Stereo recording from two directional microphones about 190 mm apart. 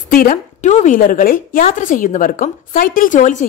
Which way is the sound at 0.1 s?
45° left (ahead or behind).